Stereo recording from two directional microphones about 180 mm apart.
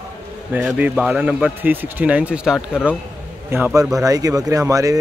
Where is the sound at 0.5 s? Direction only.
5° right (ahead or behind).